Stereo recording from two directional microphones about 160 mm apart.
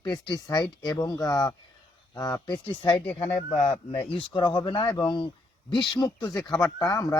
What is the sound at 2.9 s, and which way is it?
Speech, 10° left (ahead or behind).